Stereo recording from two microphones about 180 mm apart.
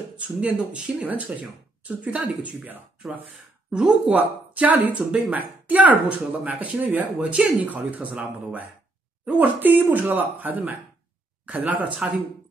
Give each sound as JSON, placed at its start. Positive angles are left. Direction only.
{"t": 0.2, "sound": "speech", "side_deg": -5}